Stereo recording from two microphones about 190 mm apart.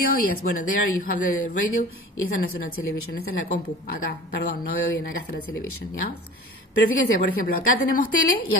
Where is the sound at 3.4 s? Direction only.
50° left (ahead or behind).